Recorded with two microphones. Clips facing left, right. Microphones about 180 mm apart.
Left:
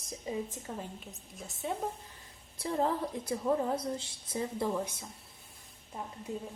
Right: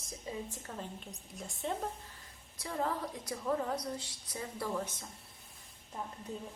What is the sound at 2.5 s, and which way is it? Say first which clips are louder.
A woman's voice: left 5 dB; 30° left (ahead or behind).